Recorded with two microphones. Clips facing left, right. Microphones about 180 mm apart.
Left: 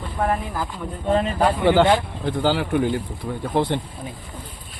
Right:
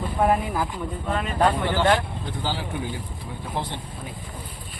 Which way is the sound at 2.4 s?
70° left (ahead or behind).